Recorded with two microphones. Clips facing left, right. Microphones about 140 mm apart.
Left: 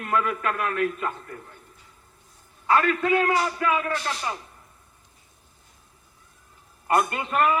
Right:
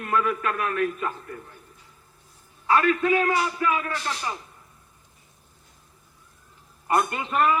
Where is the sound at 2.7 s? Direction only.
30° left (ahead or behind).